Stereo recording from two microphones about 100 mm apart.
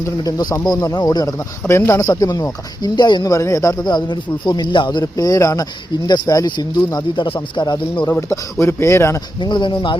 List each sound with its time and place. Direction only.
0.2 s speech: 40° left (ahead or behind)
1.4 s speech: 25° left (ahead or behind); by 3.3 s 45° left (ahead or behind)
3.3 s speech: 35° left (ahead or behind)
3.8 s speech: 50° left (ahead or behind)
8.0 s speech: 25° left (ahead or behind)
9.4 s speech: 50° left (ahead or behind)